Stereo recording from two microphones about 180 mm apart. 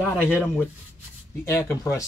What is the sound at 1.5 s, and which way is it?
Speech, 15° left (ahead or behind).